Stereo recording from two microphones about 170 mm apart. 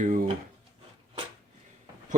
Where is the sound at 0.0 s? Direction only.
50° right (ahead or behind).